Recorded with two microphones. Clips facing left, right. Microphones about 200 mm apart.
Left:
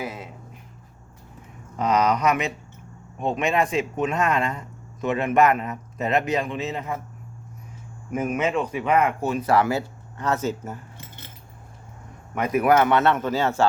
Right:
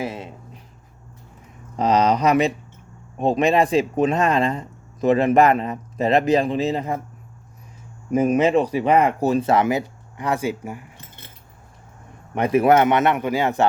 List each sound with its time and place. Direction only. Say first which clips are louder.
0.0 s speech: right 4 dB; 30° right (ahead or behind)
1.7 s speech: right 3 dB; 30° right (ahead or behind)
8.1 s speech: right 7 dB; 35° right (ahead or behind)
9.5 s speech: right 2 dB; 20° right (ahead or behind)
12.3 s speech: right 4 dB; 30° right (ahead or behind)